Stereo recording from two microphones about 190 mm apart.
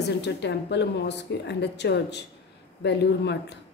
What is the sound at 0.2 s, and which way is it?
A woman's voice, 65° left (ahead or behind).